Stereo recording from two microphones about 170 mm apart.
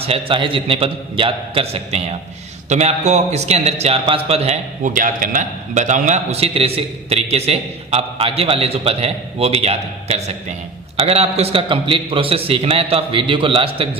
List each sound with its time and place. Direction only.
0.0 s a man's voice: 35° right (ahead or behind)
4.9 s a man's voice: 50° right (ahead or behind); by 14.0 s 35° right (ahead or behind)